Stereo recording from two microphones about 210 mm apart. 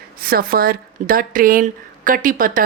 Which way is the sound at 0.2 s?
45° right (ahead or behind).